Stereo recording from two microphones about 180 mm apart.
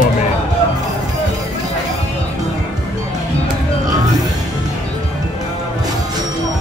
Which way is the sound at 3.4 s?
20° right (ahead or behind).